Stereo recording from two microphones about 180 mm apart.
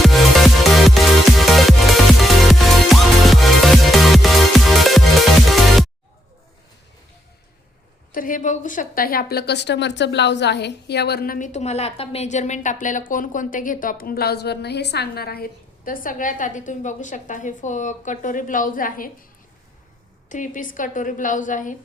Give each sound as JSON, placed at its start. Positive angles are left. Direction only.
{"t": 0.0, "sound": "music", "side_deg": 0}
{"t": 8.1, "sound": "a woman's voice", "side_deg": 50}
{"t": 20.3, "sound": "a woman's voice", "side_deg": 45}